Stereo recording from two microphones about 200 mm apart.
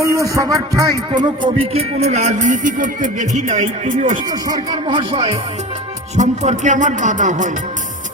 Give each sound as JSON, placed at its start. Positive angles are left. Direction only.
{"t": 0.0, "sound": "music", "side_deg": -15}
{"t": 4.3, "sound": "speech", "side_deg": -20}
{"t": 6.1, "sound": "music", "side_deg": -35}